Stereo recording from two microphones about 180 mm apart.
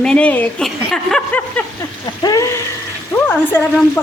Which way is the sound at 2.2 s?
20° left (ahead or behind).